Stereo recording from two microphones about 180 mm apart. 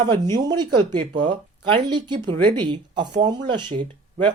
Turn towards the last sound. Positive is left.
turn(degrees=-25)  # may be behind; listen again after turning